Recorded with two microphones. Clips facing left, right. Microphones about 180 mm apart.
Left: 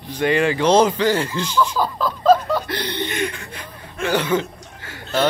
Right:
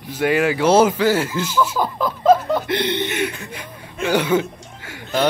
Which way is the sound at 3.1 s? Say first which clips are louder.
Right 1 dB; 10° right (ahead or behind).